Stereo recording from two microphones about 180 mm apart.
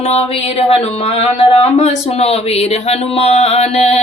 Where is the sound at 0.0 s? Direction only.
35° left (ahead or behind).